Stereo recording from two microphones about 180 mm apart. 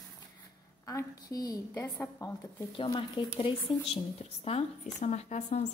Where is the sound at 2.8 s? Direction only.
25° left (ahead or behind).